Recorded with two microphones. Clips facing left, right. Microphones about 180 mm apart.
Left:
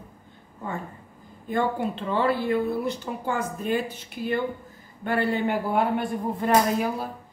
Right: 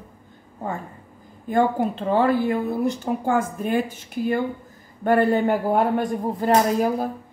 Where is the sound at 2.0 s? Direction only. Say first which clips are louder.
Right 5 dB; 45° right (ahead or behind).